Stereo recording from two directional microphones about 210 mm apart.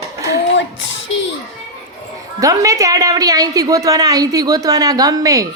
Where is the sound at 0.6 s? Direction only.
60° left (ahead or behind).